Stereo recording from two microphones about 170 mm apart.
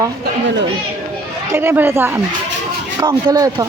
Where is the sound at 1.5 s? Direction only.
15° right (ahead or behind).